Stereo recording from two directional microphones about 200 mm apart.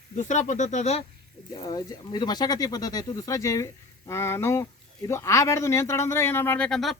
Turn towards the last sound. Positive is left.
turn(degrees=0)  # may be behind; listen again after turning